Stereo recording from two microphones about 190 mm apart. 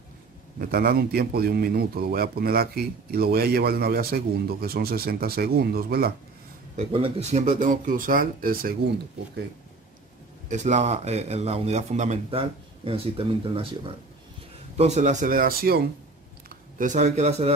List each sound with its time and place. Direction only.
0.6 s a man's voice: 50° right (ahead or behind)
6.8 s a man's voice: 30° right (ahead or behind); by 8.7 s 50° right (ahead or behind)
10.5 s a man's voice: 40° right (ahead or behind)